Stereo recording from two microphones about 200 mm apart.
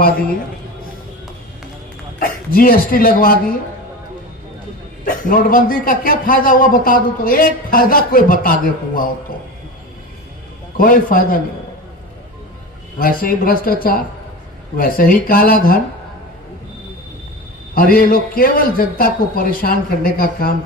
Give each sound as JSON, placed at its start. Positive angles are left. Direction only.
{"t": 2.1, "sound": "speech", "side_deg": 45}
{"t": 5.0, "sound": "a man's voice", "side_deg": 45}
{"t": 10.8, "sound": "a man's voice", "side_deg": 45}
{"t": 13.0, "sound": "a man's voice", "side_deg": 45}
{"t": 17.7, "sound": "a man's voice", "side_deg": 45}